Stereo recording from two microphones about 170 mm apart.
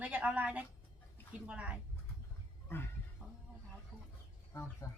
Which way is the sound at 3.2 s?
5° right (ahead or behind).